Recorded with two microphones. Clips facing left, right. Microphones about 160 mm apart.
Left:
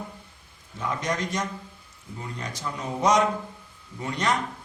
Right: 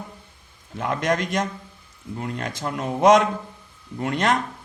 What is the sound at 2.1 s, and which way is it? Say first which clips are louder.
Speech: right 7 dB; 80° right.